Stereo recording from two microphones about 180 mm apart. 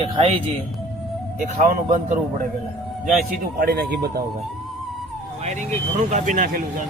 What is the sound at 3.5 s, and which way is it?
Speech, 60° right (ahead or behind).